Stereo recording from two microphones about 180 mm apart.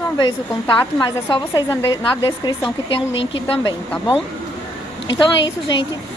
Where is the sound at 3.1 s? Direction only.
90° left.